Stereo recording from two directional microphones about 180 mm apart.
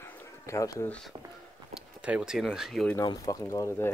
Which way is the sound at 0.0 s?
10° left (ahead or behind).